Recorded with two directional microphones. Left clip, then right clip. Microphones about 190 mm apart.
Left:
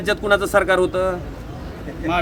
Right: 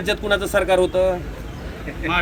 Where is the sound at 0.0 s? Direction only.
5° left (ahead or behind).